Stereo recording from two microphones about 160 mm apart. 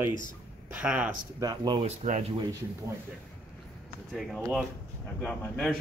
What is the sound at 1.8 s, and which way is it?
Speech, 50° right (ahead or behind).